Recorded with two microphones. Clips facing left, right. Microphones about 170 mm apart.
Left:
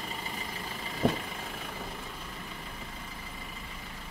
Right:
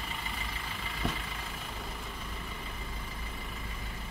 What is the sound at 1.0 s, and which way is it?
Vehicle, 45° left (ahead or behind).